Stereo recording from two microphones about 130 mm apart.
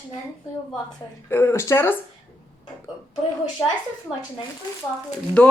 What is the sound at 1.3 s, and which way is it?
Speech, 20° left (ahead or behind).